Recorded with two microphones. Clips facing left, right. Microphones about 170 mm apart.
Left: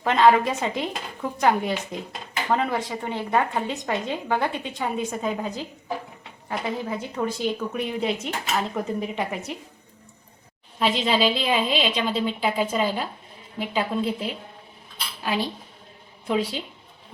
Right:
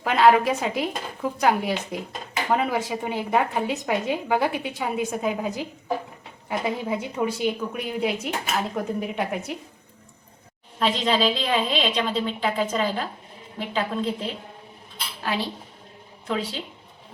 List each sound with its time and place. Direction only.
0.0 s a woman's voice: 5° right (ahead or behind)
10.8 s a woman's voice: 5° left (ahead or behind)
16.2 s a woman's voice: 15° left (ahead or behind)